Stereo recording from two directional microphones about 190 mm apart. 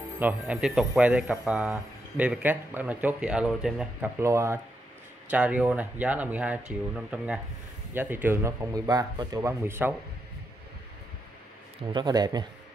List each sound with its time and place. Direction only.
0.2 s a man's voice: 5° right (ahead or behind)
4.2 s a man's voice: 15° right (ahead or behind)
11.9 s speech: 25° right (ahead or behind)